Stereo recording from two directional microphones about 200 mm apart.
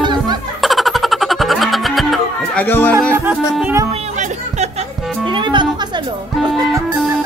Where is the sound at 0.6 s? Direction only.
Centre (ahead or behind).